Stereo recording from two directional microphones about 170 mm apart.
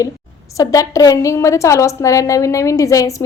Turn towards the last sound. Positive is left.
turn(degrees=20)  # may be behind; listen again after turning